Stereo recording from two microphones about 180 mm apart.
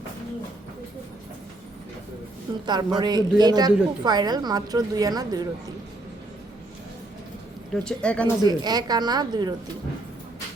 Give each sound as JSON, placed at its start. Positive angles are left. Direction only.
{"t": 2.5, "sound": "a woman's voice", "side_deg": -25}
{"t": 7.7, "sound": "speech", "side_deg": 5}
{"t": 8.4, "sound": "a woman's voice", "side_deg": -20}